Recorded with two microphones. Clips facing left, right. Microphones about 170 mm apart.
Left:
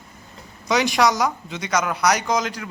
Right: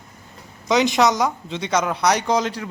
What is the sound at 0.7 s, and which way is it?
Speech, 20° right (ahead or behind).